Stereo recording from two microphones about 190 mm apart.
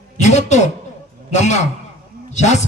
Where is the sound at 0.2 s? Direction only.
35° left (ahead or behind).